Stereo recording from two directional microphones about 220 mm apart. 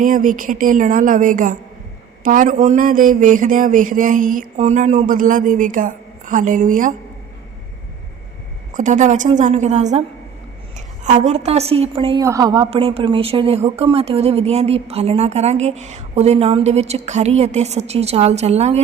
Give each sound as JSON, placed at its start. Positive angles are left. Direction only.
{"t": 0.0, "sound": "a man's voice", "side_deg": -35}
{"t": 8.7, "sound": "a man's voice", "side_deg": -35}
{"t": 12.2, "sound": "a woman's voice", "side_deg": -15}